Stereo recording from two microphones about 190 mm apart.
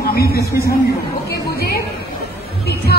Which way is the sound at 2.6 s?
55° left (ahead or behind).